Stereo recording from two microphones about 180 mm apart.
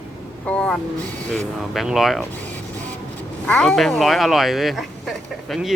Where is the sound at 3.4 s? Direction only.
5° left (ahead or behind).